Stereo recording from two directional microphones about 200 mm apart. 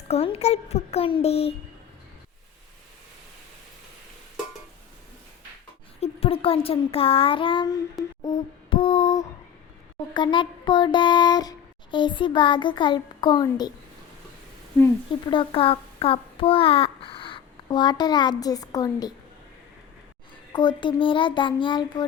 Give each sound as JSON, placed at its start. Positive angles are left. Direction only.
{"t": 0.1, "sound": "a child's voice", "side_deg": 30}
{"t": 6.0, "sound": "child singing", "side_deg": 30}
{"t": 8.2, "sound": "a sound", "side_deg": 25}
{"t": 10.2, "sound": "child singing", "side_deg": 20}
{"t": 15.3, "sound": "a child's voice", "side_deg": 25}
{"t": 20.5, "sound": "child singing", "side_deg": 20}